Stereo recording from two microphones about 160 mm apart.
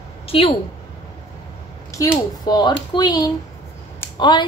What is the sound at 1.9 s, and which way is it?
A woman's voice, 20° left (ahead or behind).